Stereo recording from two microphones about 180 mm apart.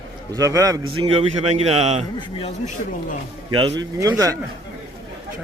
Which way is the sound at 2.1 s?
35° left (ahead or behind).